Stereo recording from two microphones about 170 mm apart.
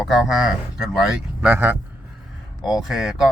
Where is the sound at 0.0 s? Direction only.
Centre (ahead or behind).